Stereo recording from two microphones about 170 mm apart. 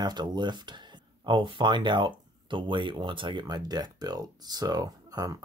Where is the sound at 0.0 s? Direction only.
25° right (ahead or behind).